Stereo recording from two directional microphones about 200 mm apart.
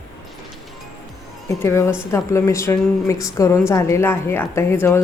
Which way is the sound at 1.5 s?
15° left (ahead or behind).